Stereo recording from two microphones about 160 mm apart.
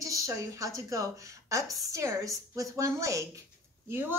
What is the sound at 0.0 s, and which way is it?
A woman's voice, 20° right (ahead or behind).